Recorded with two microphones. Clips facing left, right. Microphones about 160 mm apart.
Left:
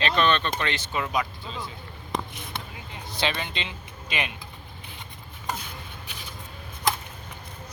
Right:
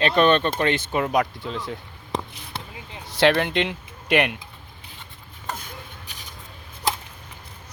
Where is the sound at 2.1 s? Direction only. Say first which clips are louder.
Right 2 dB; 35° right (ahead or behind).